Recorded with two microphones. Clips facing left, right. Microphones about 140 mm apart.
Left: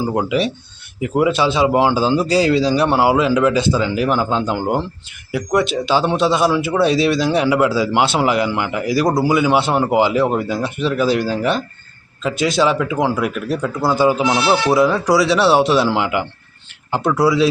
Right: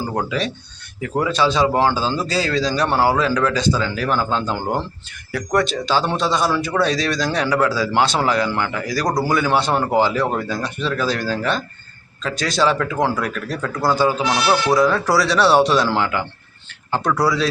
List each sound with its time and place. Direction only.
0.1 s speech: 10° left (ahead or behind)
7.7 s speech: 25° left (ahead or behind)
8.0 s speech: 10° left (ahead or behind)
14.1 s speech: 20° left (ahead or behind)
14.7 s speech: 10° left (ahead or behind)
15.3 s speech: 25° left (ahead or behind)
15.5 s speech: 5° left (ahead or behind)
17.2 s speech: 5° left (ahead or behind)